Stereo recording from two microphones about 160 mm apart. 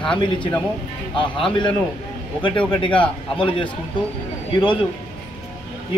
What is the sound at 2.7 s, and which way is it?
A man's voice, 30° left (ahead or behind).